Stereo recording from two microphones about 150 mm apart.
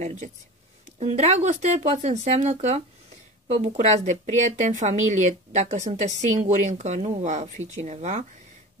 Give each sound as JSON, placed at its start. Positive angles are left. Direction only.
{"t": 0.0, "sound": "speech", "side_deg": -50}